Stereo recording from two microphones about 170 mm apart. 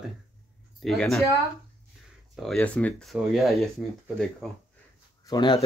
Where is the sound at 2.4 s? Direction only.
5° left (ahead or behind).